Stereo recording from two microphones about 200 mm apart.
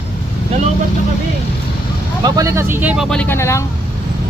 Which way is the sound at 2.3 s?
15° right (ahead or behind).